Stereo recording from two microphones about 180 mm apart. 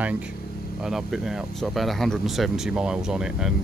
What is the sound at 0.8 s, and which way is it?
Speech, centre (ahead or behind).